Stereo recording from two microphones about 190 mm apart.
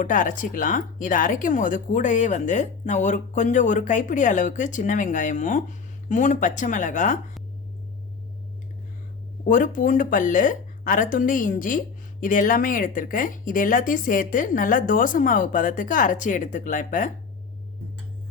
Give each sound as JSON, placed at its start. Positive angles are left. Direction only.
{"t": 0.0, "sound": "a woman's voice", "side_deg": 45}
{"t": 9.5, "sound": "speech", "side_deg": 45}